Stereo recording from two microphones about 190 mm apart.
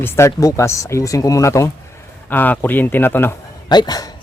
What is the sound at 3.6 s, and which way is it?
Speech, 20° left (ahead or behind).